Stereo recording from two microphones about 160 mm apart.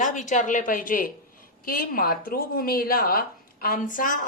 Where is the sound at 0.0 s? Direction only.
50° left (ahead or behind).